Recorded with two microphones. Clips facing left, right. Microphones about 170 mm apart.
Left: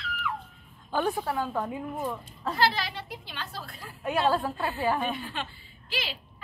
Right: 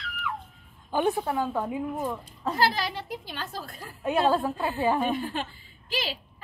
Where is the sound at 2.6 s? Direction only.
45° right (ahead or behind).